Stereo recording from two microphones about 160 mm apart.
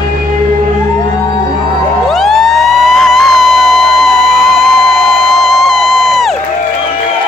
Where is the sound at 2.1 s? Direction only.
Centre (ahead or behind).